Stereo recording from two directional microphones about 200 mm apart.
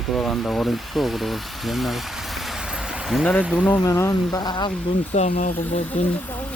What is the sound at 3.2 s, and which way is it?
Speech, 10° left (ahead or behind).